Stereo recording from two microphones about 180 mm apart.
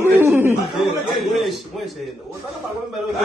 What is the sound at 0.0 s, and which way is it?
Chuckle, 15° right (ahead or behind).